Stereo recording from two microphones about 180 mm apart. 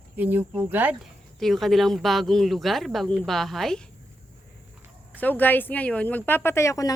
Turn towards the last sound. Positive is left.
turn(degrees=15)  # may be behind; listen again after turning